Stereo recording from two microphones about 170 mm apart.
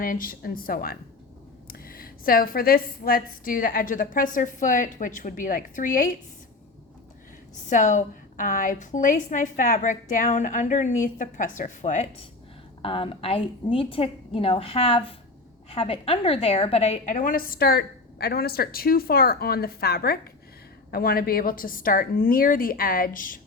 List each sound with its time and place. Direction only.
0.0 s a woman's voice: 55° left (ahead or behind)
7.7 s a woman's voice: 45° left (ahead or behind)
12.8 s a woman's voice: 30° left (ahead or behind); by 23.4 s 55° left (ahead or behind)